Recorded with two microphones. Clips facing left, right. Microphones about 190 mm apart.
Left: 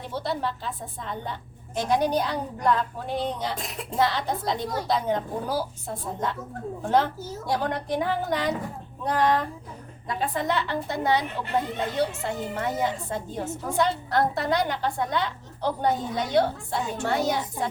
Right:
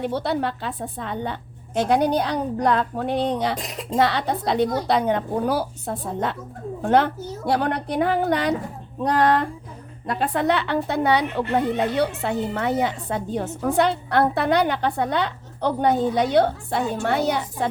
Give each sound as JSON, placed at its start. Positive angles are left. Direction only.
{"t": 0.0, "sound": "a woman's voice", "side_deg": -65}